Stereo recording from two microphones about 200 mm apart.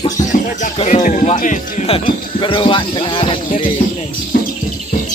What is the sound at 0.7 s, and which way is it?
Speech, 35° left (ahead or behind).